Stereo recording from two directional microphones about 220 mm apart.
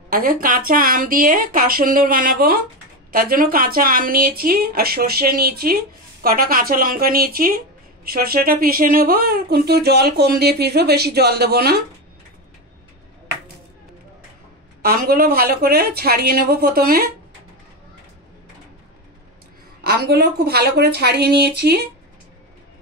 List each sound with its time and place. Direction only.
0.1 s a woman's voice: 40° right (ahead or behind)
14.8 s speech: 40° right (ahead or behind)
19.8 s speech: 45° right (ahead or behind)